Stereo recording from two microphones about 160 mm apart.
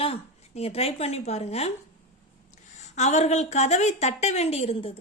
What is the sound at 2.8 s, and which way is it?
A woman's voice, 45° left (ahead or behind).